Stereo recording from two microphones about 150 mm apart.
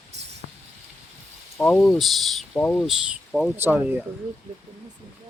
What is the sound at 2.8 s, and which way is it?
Speech, 5° right (ahead or behind).